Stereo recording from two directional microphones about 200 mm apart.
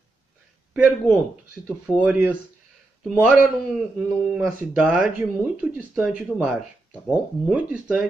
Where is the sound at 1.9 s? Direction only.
5° right (ahead or behind).